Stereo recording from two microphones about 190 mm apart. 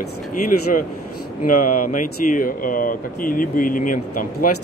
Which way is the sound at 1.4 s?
45° left (ahead or behind).